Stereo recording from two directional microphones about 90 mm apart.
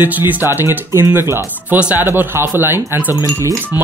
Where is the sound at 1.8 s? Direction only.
15° right (ahead or behind).